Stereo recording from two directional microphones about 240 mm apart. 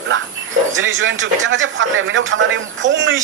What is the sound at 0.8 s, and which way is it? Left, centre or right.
Speech, right.